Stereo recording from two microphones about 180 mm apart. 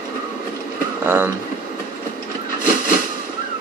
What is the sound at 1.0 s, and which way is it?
Speech, 10° right (ahead or behind).